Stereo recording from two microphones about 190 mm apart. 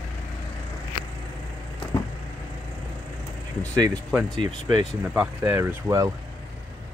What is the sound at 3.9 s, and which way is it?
Speech, centre (ahead or behind).